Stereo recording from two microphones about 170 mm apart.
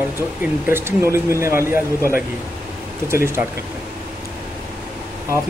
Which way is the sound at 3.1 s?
15° right (ahead or behind).